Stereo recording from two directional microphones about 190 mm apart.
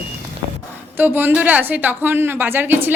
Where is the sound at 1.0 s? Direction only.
10° right (ahead or behind).